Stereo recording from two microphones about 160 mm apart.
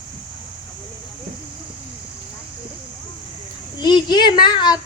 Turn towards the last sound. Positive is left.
turn(degrees=30)  # may be behind; listen again after turning